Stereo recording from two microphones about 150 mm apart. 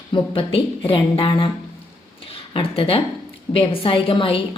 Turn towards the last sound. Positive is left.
turn(degrees=35)  # may be behind; listen again after turning